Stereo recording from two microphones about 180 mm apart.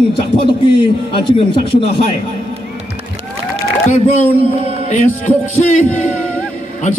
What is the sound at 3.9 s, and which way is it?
Speech, 35° left (ahead or behind).